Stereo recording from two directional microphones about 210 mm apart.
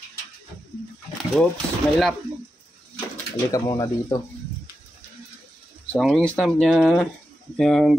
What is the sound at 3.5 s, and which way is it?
Speech, 20° left (ahead or behind).